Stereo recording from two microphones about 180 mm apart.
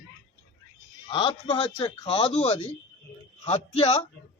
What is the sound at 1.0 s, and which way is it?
A man's voice, 25° left (ahead or behind).